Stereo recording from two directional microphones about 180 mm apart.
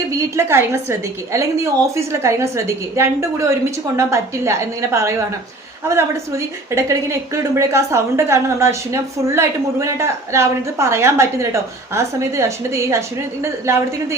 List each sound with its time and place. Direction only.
0.3 s a woman's voice: 15° right (ahead or behind)